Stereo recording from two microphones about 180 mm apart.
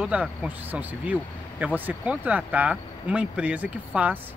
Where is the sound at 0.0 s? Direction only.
5° right (ahead or behind).